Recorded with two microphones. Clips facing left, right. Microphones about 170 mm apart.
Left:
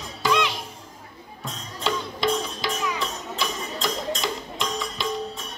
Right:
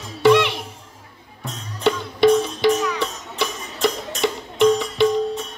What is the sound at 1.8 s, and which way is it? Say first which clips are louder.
Music: right 9 dB; 65° right (ahead or behind).